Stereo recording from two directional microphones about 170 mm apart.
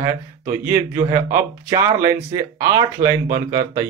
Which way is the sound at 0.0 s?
15° right (ahead or behind).